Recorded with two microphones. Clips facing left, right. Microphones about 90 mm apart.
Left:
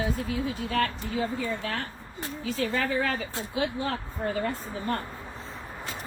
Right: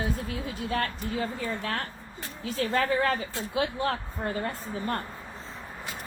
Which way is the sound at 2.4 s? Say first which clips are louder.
Right 1 dB; 45° right (ahead or behind).